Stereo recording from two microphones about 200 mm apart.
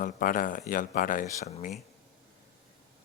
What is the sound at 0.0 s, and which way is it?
Speech, 45° left (ahead or behind).